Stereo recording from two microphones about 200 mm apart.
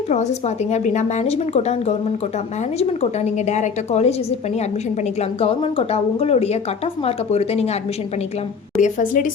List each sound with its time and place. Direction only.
0.1 s speech: 35° left (ahead or behind)
8.8 s speech: 40° left (ahead or behind)